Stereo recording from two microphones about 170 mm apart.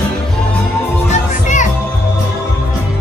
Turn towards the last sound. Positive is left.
turn(degrees=45)  # may be behind; listen again after turning